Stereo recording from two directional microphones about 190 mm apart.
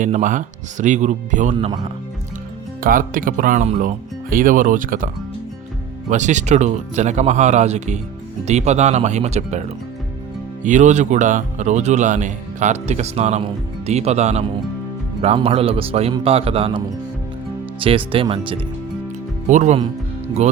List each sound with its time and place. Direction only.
0.0 s speech: 40° right (ahead or behind)
1.5 s speech: 25° right (ahead or behind)
2.8 s speech: 45° right (ahead or behind); by 18.6 s 30° right (ahead or behind)
19.5 s speech: 40° right (ahead or behind)